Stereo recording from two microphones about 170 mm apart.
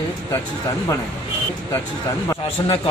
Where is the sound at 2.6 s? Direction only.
25° left (ahead or behind).